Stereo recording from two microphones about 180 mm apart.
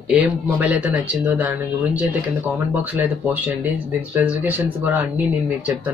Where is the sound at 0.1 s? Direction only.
5° right (ahead or behind).